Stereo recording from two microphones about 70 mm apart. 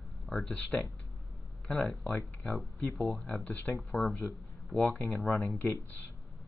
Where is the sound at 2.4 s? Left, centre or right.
Centre.